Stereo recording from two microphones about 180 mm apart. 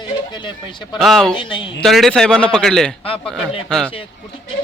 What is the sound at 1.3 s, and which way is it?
Speech, 25° left (ahead or behind).